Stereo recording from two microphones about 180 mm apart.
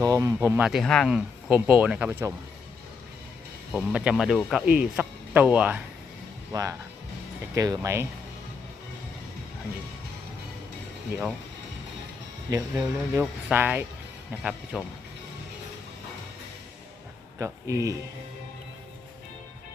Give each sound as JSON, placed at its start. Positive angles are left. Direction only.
{"t": 0.0, "sound": "speech", "side_deg": -20}
{"t": 3.7, "sound": "speech", "side_deg": -5}
{"t": 12.5, "sound": "speech", "side_deg": -15}
{"t": 17.3, "sound": "speech", "side_deg": -15}